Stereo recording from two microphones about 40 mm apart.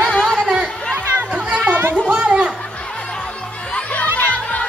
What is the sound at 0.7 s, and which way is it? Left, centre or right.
Chatter, centre.